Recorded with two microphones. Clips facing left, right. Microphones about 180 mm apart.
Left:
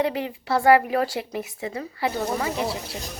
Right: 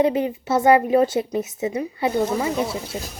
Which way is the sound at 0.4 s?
20° right (ahead or behind).